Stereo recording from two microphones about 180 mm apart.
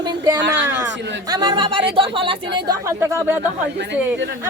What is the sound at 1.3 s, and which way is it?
Speech, 25° right (ahead or behind).